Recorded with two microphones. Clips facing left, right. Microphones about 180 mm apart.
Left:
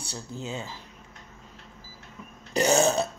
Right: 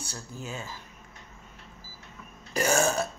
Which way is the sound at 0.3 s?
20° left (ahead or behind).